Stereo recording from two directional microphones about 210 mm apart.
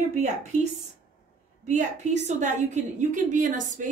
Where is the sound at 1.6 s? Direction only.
35° right (ahead or behind).